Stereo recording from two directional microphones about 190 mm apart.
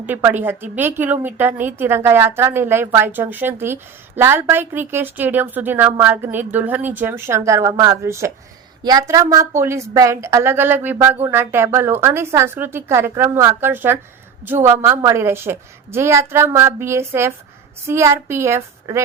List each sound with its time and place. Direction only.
0.0 s a woman's voice: 10° right (ahead or behind)